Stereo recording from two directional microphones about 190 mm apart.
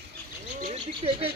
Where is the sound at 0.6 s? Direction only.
35° right (ahead or behind).